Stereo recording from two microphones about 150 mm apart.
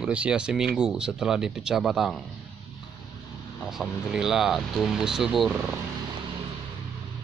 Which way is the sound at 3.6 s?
5° right (ahead or behind).